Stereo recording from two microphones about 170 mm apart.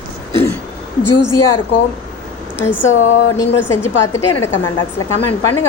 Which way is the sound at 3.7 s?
15° left (ahead or behind).